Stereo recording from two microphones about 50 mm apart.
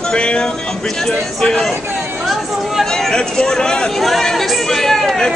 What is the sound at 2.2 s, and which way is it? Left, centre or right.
Chatter, centre.